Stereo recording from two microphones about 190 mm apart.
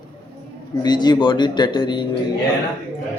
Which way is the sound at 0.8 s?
20° left (ahead or behind).